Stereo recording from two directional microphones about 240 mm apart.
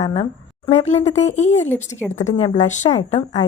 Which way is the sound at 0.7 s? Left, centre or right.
Left.